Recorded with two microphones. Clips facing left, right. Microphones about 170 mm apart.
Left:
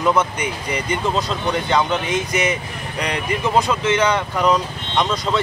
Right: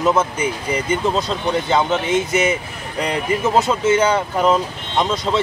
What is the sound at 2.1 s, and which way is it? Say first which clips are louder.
Speech: right 3 dB; 25° right (ahead or behind).